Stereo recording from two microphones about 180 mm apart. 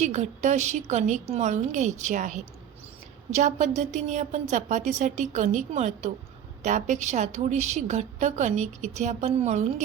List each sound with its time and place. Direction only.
0.0 s a woman's voice: 40° right (ahead or behind)